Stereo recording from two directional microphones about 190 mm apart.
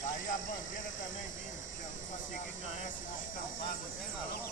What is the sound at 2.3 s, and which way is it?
Speech, 45° left (ahead or behind).